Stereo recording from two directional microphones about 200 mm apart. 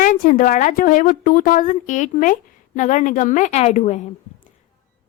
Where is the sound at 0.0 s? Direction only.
40° left (ahead or behind).